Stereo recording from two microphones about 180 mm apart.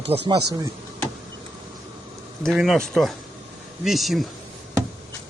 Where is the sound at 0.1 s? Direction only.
35° right (ahead or behind).